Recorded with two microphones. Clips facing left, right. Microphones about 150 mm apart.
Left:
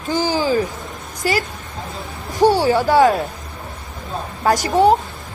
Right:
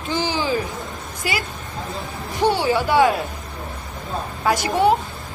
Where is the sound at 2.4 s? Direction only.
40° left (ahead or behind).